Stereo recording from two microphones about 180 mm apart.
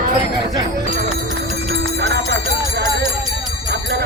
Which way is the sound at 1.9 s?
75° right (ahead or behind).